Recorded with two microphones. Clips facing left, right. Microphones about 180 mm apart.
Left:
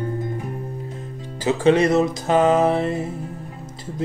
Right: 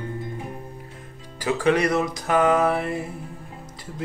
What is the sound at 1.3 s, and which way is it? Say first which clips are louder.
Music: left 4 dB; 25° left (ahead or behind).